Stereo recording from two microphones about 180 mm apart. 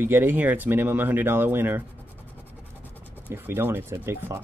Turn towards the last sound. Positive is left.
turn(degrees=-15)  # may be behind; listen again after turning